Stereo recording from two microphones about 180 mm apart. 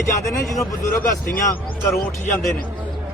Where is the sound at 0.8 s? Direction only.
50° left (ahead or behind).